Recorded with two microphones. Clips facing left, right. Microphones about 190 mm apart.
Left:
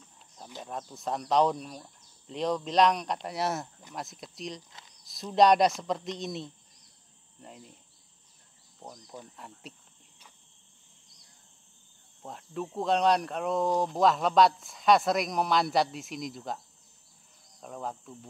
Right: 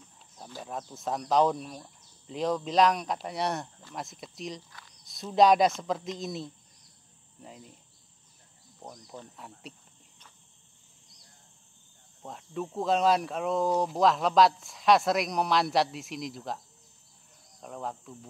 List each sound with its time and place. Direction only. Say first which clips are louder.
0.6 s speech: right 1 dB; centre (ahead or behind)
4.6 s speech: right 1 dB; 20° left (ahead or behind)
5.0 s speech: even; centre (ahead or behind)
8.7 s speech: right 1 dB; centre (ahead or behind)
9.4 s cricket: right 1 dB; centre (ahead or behind)
12.2 s speech: right 1 dB; centre (ahead or behind)